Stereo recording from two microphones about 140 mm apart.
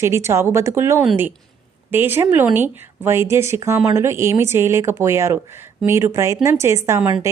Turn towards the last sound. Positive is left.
turn(degrees=-20)  # may be behind; listen again after turning